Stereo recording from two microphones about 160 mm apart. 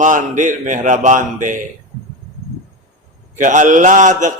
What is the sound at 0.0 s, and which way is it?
A man's voice, 50° right (ahead or behind).